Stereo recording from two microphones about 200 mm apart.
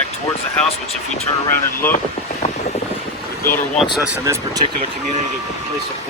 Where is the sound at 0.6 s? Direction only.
5° left (ahead or behind).